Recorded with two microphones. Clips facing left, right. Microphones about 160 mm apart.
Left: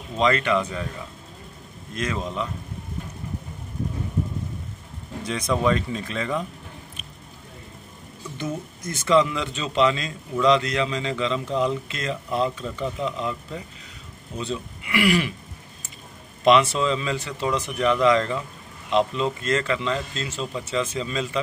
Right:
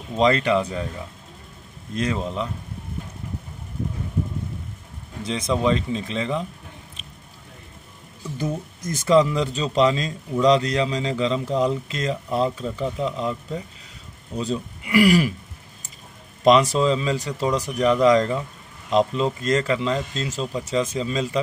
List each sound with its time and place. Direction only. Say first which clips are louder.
0.2 s speech: right 2 dB; 35° right (ahead or behind)
2.0 s speech: right 3 dB; 30° right (ahead or behind)
5.2 s speech: right 1 dB; 25° right (ahead or behind)
8.8 s speech: right 2 dB; 40° right (ahead or behind)
16.4 s speech: right 2 dB; 35° right (ahead or behind)